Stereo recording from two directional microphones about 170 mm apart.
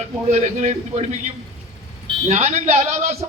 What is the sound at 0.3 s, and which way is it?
Speech, 40° right (ahead or behind).